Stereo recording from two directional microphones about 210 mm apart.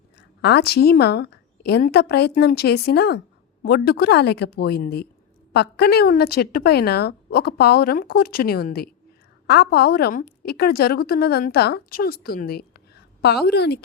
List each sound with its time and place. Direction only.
0.2 s a woman's voice: 50° left (ahead or behind)